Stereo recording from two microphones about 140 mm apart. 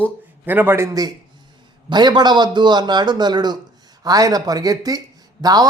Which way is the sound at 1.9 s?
30° right (ahead or behind).